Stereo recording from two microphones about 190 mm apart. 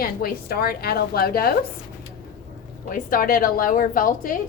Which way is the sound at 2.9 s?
45° left (ahead or behind).